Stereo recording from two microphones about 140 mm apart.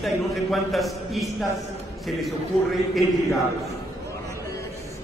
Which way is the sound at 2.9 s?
Centre (ahead or behind).